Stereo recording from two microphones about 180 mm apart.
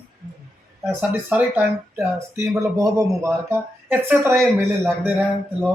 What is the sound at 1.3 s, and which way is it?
Speech, 10° right (ahead or behind).